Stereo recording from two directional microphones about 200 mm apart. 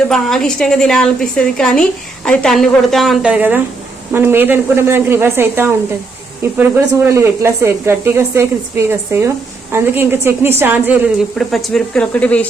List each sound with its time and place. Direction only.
0.1 s a woman's voice: centre (ahead or behind)